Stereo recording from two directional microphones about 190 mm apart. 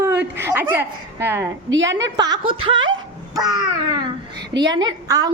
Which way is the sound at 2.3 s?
25° right (ahead or behind).